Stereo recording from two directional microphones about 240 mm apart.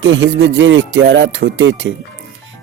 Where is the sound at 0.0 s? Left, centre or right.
Right.